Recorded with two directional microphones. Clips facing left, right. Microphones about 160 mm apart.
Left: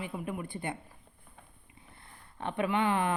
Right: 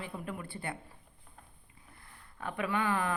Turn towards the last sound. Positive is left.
turn(degrees=25)  # may be behind; listen again after turning